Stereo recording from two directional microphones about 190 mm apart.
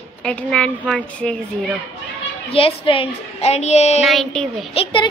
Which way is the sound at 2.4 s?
30° left (ahead or behind).